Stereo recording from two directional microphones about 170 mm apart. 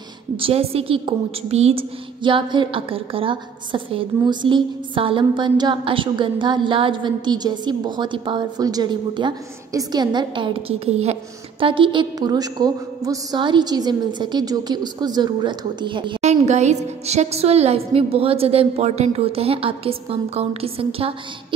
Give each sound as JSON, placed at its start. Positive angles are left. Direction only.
{"t": 0.4, "sound": "a woman's voice", "side_deg": -35}
{"t": 16.2, "sound": "a woman's voice", "side_deg": -40}